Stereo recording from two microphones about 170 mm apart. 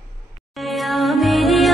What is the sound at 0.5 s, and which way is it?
Music, centre (ahead or behind).